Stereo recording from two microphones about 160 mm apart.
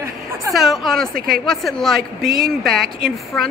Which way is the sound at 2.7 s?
75° right (ahead or behind).